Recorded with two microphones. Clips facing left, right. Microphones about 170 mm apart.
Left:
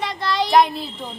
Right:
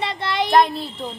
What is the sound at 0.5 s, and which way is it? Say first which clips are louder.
Speech: even; centre (ahead or behind).